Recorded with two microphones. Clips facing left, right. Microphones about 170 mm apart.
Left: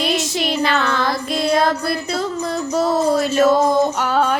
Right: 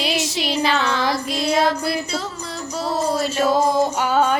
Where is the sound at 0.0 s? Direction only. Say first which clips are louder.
Left 3 dB; 50° left (ahead or behind).